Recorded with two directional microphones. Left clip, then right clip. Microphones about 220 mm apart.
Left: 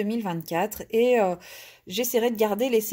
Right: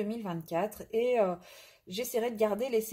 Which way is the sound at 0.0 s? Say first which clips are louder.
Left 7 dB; 45° left (ahead or behind).